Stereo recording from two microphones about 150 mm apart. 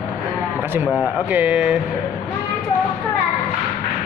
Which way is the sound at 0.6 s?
15° right (ahead or behind).